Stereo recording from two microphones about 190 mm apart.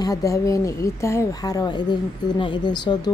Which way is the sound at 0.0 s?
20° left (ahead or behind).